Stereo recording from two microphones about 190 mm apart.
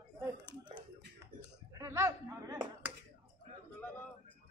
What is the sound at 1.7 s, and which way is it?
Speech, 15° right (ahead or behind).